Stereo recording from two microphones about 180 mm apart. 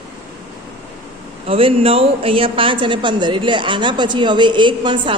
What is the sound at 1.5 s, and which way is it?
A woman's voice, 30° right (ahead or behind).